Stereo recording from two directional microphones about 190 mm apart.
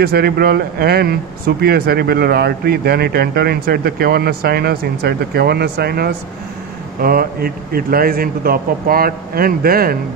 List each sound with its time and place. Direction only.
0.0 s a man's voice: 55° right (ahead or behind)